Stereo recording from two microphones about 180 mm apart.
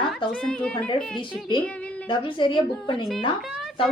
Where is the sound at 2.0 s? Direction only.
25° left (ahead or behind).